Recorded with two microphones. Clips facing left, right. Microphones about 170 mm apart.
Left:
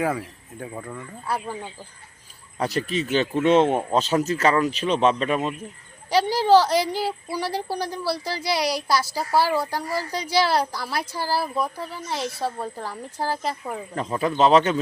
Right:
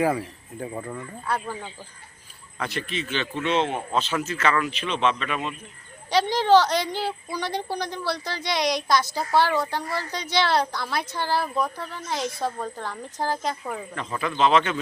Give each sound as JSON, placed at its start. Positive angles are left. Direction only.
{"t": 0.0, "sound": "speech", "side_deg": 0}
{"t": 1.3, "sound": "a woman's voice", "side_deg": 10}
{"t": 2.6, "sound": "speech", "side_deg": 40}
{"t": 6.1, "sound": "a woman's voice", "side_deg": 10}
{"t": 13.9, "sound": "speech", "side_deg": 35}